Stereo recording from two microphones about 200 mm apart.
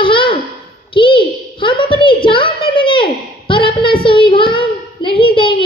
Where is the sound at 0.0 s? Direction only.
25° left (ahead or behind).